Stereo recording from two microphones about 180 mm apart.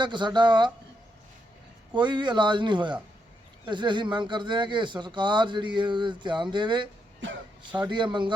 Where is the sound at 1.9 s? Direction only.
25° right (ahead or behind).